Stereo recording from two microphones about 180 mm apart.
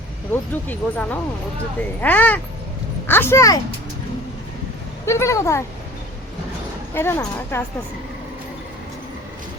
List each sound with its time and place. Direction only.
0.5 s speech: 10° left (ahead or behind)
5.0 s speech: 15° left (ahead or behind)
6.9 s speech: 15° left (ahead or behind)